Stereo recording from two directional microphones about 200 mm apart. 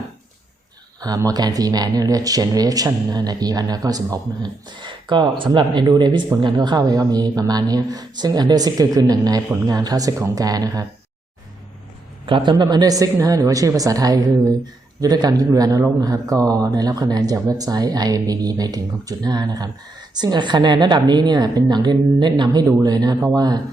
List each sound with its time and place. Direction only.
1.0 s speech: 20° right (ahead or behind)
12.2 s speech: 25° right (ahead or behind)